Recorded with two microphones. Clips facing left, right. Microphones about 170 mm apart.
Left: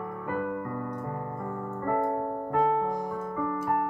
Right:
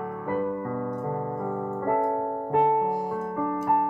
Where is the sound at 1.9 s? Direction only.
35° right (ahead or behind).